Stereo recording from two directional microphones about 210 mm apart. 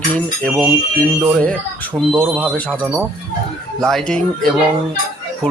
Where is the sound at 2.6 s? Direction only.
5° left (ahead or behind).